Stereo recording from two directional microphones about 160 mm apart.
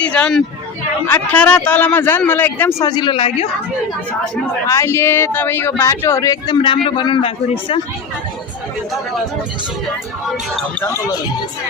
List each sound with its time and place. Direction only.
0.0 s a man's voice: 5° left (ahead or behind); by 3.4 s 35° left (ahead or behind)
4.6 s a man's voice: 20° left (ahead or behind); by 7.8 s 35° left (ahead or behind)
10.8 s a man's voice: 15° left (ahead or behind)